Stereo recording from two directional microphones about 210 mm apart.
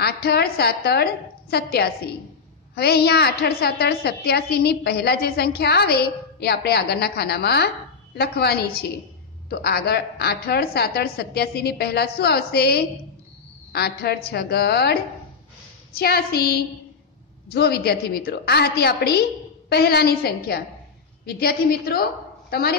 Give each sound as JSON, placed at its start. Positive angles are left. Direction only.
{"t": 0.0, "sound": "a woman's voice", "side_deg": 50}